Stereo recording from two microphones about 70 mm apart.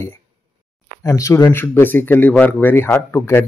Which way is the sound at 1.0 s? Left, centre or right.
Left.